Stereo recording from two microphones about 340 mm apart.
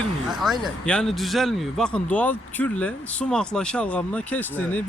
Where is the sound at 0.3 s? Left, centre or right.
Centre.